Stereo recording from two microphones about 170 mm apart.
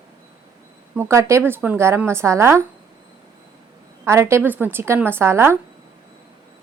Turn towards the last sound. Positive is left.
turn(degrees=-15)  # may be behind; listen again after turning